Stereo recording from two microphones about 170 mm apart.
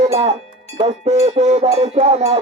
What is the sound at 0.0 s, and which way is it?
Music, 40° right (ahead or behind).